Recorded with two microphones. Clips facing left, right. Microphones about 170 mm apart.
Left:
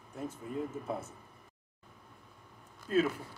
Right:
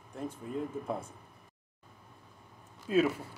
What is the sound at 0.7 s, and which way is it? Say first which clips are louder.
Speech: right 2 dB; 5° left (ahead or behind).